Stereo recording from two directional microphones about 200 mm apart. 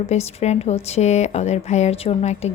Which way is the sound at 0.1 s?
30° left (ahead or behind).